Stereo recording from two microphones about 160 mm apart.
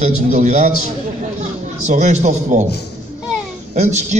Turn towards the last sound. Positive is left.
turn(degrees=-45)  # may be behind; listen again after turning